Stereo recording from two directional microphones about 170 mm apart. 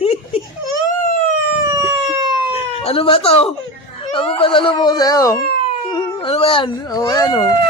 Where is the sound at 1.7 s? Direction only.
20° right (ahead or behind).